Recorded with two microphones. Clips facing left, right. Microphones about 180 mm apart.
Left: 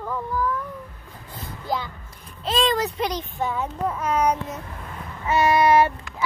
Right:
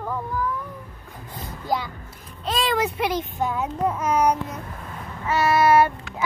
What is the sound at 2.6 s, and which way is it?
Child singing, 10° right (ahead or behind).